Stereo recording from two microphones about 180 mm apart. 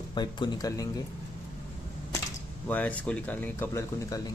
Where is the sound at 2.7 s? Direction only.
10° left (ahead or behind).